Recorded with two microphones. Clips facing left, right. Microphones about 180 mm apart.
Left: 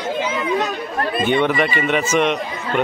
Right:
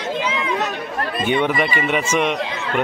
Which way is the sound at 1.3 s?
10° right (ahead or behind).